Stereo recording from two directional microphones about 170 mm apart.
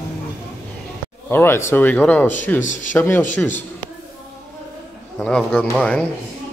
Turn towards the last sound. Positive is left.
turn(degrees=5)  # may be behind; listen again after turning